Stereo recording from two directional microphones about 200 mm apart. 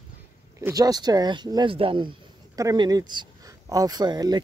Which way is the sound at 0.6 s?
20° right (ahead or behind).